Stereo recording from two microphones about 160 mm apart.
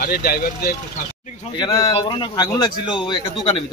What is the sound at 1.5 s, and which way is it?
Speech, 25° left (ahead or behind).